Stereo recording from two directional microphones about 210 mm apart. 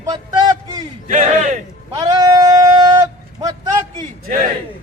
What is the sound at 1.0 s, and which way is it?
Speech, 40° right (ahead or behind).